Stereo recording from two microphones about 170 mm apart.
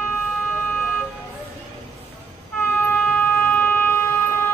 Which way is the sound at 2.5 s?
10° left (ahead or behind).